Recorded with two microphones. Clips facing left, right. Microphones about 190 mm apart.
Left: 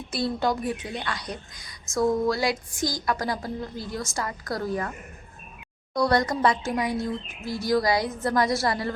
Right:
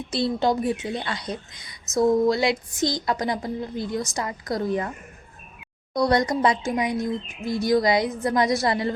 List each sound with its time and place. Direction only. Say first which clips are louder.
0.1 s a woman's voice: right 3 dB; 25° right (ahead or behind)
5.9 s a woman's voice: right 2 dB; 20° right (ahead or behind)